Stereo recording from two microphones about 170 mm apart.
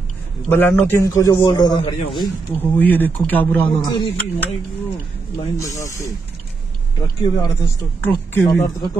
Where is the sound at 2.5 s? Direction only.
10° left (ahead or behind).